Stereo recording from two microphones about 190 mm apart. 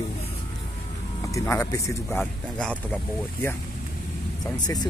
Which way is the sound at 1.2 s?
15° left (ahead or behind).